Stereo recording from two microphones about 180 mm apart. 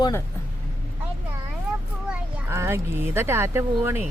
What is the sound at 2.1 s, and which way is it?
Speech, 15° right (ahead or behind).